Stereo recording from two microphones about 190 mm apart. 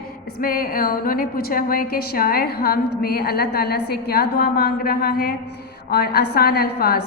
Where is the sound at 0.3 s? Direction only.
50° left (ahead or behind).